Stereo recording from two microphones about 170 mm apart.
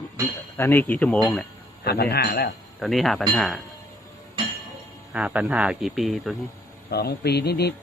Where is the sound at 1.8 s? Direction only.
70° left (ahead or behind).